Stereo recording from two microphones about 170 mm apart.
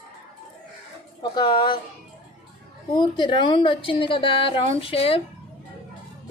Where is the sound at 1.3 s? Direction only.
25° left (ahead or behind).